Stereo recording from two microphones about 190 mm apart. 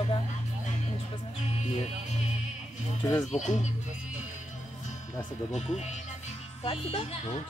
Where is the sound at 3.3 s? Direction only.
40° left (ahead or behind).